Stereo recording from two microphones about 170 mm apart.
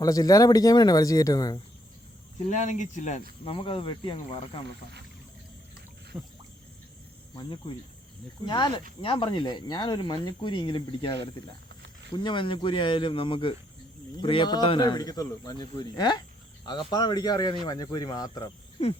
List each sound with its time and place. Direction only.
0.0 s speech: 20° left (ahead or behind)
2.4 s speech: 45° left (ahead or behind)
3.4 s speech: 30° left (ahead or behind)
7.3 s speech: 30° left (ahead or behind)
12.1 s speech: 25° left (ahead or behind)